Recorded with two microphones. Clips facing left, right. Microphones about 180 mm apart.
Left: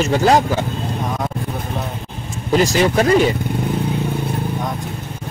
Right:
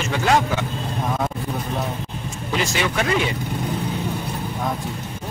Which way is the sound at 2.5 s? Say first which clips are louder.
Left 8 dB; 40° left (ahead or behind).